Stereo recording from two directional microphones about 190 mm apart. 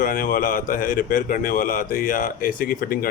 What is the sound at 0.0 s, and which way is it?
A man's voice, 45° left (ahead or behind).